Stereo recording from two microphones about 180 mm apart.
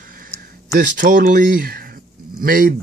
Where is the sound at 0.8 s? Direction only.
50° right (ahead or behind).